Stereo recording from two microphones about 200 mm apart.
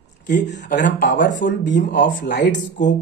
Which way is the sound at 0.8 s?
60° left (ahead or behind).